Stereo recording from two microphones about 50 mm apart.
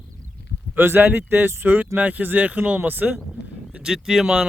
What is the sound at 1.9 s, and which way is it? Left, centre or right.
Speech, right.